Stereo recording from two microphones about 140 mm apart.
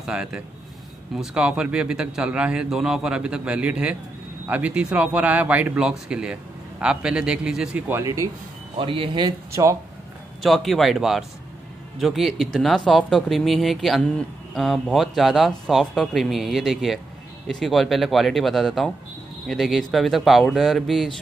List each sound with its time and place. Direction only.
0.0 s a man's voice: 5° right (ahead or behind)
8.7 s speech: 40° right (ahead or behind)
9.5 s speech: 20° right (ahead or behind)
10.4 s speech: centre (ahead or behind)